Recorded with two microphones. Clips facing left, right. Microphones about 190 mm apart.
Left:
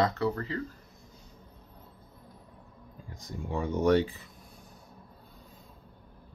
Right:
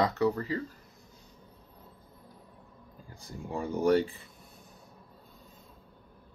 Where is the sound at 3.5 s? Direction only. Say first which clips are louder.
Left 1 dB; 35° right (ahead or behind).